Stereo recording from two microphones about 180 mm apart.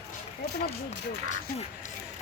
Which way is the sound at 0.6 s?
35° left (ahead or behind).